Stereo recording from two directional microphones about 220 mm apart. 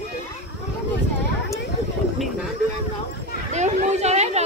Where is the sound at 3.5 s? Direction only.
30° right (ahead or behind).